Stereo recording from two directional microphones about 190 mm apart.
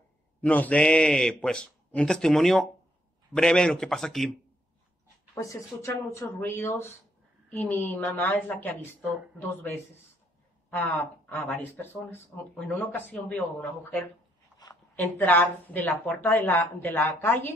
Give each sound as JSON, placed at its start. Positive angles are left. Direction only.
{"t": 0.4, "sound": "speech", "side_deg": 10}
{"t": 5.3, "sound": "speech", "side_deg": 15}
{"t": 10.8, "sound": "speech", "side_deg": 10}